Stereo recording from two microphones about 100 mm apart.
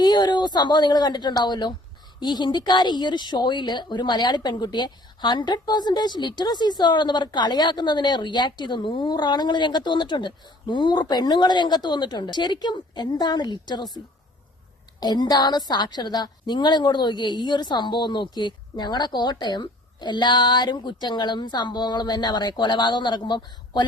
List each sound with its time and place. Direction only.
0.0 s a woman's voice: 45° left (ahead or behind)
15.0 s a woman's voice: 45° left (ahead or behind)